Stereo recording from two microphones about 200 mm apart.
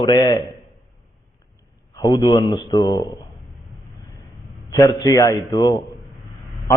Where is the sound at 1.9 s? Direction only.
20° left (ahead or behind).